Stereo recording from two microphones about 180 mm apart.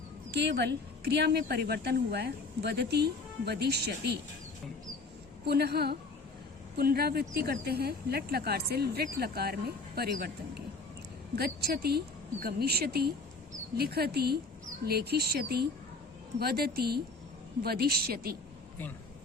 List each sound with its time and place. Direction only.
0.3 s speech: 70° right (ahead or behind)
5.5 s speech: 60° right (ahead or behind)